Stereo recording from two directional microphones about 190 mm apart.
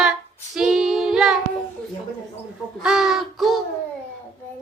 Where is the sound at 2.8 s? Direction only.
5° right (ahead or behind).